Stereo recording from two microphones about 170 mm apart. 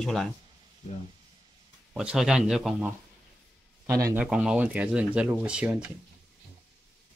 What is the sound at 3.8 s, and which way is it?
Speech, 15° right (ahead or behind).